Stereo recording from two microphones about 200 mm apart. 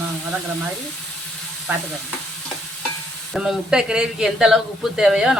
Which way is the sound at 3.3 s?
Centre (ahead or behind).